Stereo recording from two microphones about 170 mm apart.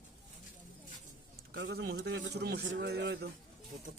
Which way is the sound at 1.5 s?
80° right.